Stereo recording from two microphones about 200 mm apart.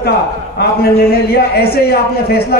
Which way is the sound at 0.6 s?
50° left (ahead or behind).